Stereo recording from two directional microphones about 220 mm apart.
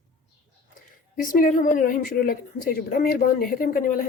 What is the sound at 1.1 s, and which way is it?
Speech, 40° left (ahead or behind).